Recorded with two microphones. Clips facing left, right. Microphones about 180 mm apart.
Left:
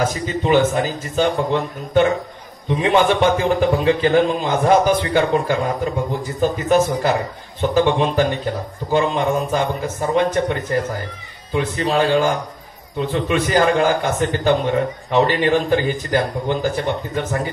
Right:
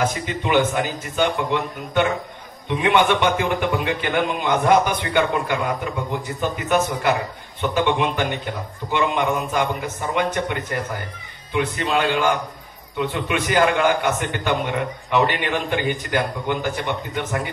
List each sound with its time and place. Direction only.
0.0 s a man's voice: 35° left (ahead or behind)